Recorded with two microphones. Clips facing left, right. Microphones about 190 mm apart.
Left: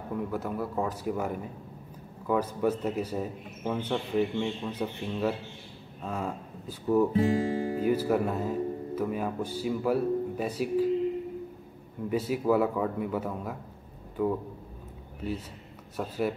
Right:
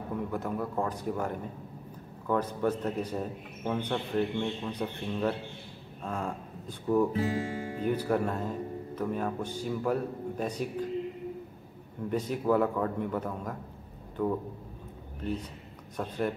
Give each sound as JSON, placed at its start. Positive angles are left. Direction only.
{"t": 0.3, "sound": "a man's voice", "side_deg": 5}
{"t": 7.1, "sound": "guitar", "side_deg": 30}
{"t": 7.8, "sound": "a man's voice", "side_deg": 5}
{"t": 12.1, "sound": "a man's voice", "side_deg": 5}
{"t": 16.0, "sound": "a man's voice", "side_deg": 5}